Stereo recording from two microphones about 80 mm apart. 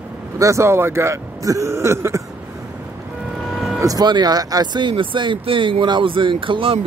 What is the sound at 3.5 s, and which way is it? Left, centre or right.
Vehicle, centre.